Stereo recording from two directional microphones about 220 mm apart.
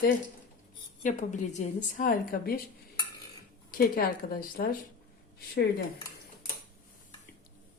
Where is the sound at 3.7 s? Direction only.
40° left (ahead or behind).